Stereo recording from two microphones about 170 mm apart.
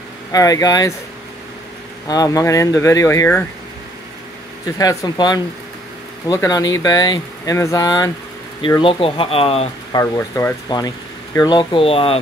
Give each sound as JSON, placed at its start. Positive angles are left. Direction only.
{"t": 0.3, "sound": "speech", "side_deg": 20}
{"t": 2.0, "sound": "speech", "side_deg": 20}
{"t": 4.7, "sound": "speech", "side_deg": 25}
{"t": 9.9, "sound": "speech", "side_deg": 15}